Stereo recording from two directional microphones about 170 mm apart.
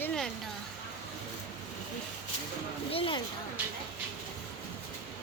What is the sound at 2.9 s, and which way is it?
Speech, 30° left (ahead or behind).